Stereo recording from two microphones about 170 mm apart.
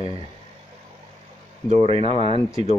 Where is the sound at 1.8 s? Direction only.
35° right (ahead or behind).